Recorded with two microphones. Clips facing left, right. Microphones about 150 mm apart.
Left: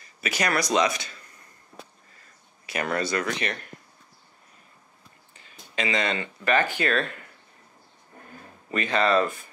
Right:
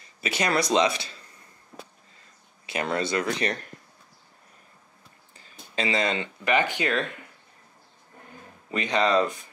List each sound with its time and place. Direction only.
0.2 s speech: 25° right (ahead or behind)
2.6 s speech: 25° right (ahead or behind)
5.8 s speech: 25° right (ahead or behind)
8.6 s speech: 20° right (ahead or behind)